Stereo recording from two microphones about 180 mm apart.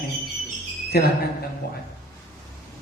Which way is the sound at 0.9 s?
60° left (ahead or behind).